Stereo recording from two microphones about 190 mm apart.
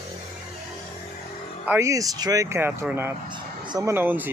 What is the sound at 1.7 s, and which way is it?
Speech, 15° right (ahead or behind).